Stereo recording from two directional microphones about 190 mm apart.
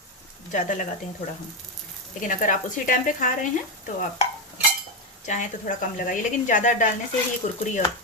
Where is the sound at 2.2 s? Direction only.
45° left (ahead or behind).